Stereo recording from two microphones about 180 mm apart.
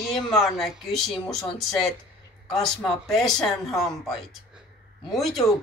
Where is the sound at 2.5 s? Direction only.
5° left (ahead or behind).